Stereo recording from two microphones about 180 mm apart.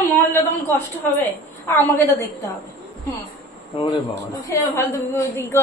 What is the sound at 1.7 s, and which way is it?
Speech, 10° left (ahead or behind).